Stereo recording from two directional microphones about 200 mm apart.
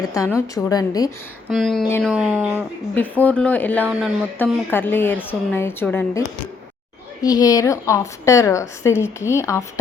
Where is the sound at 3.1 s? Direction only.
10° left (ahead or behind).